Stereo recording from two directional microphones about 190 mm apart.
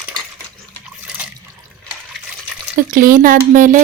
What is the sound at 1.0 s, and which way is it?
Water, 5° right (ahead or behind).